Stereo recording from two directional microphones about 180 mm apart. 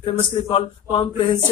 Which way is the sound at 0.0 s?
30° left (ahead or behind).